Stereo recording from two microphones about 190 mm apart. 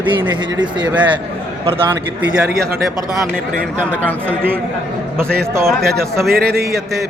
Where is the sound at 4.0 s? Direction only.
10° left (ahead or behind).